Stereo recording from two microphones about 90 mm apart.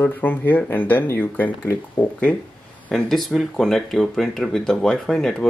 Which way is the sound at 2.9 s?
Centre (ahead or behind).